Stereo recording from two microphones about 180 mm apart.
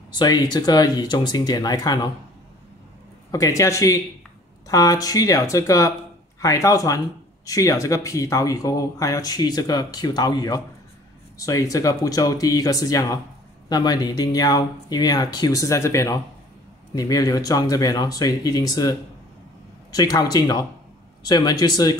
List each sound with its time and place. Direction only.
0.1 s speech: 25° left (ahead or behind)
3.3 s speech: 20° left (ahead or behind)